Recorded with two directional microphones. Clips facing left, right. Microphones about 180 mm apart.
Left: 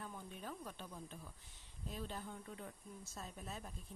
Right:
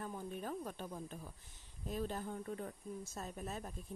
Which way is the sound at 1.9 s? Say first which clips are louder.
Right 6 dB; 45° right (ahead or behind).